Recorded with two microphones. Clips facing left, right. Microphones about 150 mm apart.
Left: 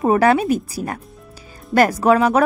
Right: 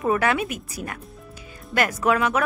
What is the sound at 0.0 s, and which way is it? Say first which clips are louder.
Speech: left 7 dB; 35° left (ahead or behind).